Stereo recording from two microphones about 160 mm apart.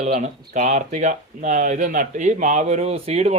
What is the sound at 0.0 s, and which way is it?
A man's voice, 45° right (ahead or behind).